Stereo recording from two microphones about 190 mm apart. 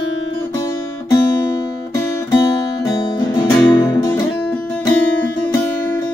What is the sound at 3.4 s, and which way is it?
Music, 20° left (ahead or behind).